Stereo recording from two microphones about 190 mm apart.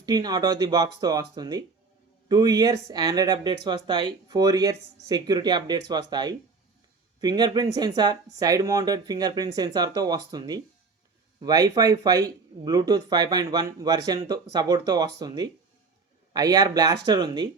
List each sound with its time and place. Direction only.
0.0 s speech: 20° right (ahead or behind)